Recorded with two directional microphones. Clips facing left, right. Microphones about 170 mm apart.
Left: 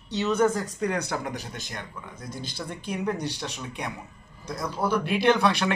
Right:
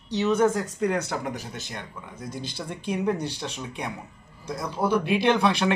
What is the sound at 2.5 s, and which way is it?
Speech, 25° right (ahead or behind).